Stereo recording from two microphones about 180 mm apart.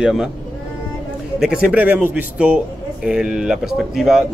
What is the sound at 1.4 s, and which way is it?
Speech, 5° right (ahead or behind).